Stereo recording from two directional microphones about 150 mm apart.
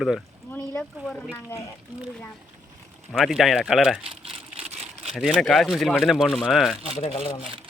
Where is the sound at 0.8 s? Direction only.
5° left (ahead or behind).